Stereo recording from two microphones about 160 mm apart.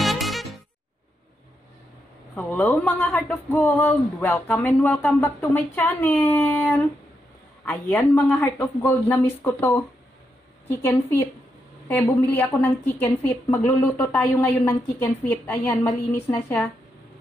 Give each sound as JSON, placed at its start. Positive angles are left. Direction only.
{"t": 0.0, "sound": "music", "side_deg": 0}
{"t": 2.3, "sound": "speech", "side_deg": 10}